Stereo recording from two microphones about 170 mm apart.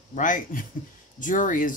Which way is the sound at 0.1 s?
50° left (ahead or behind).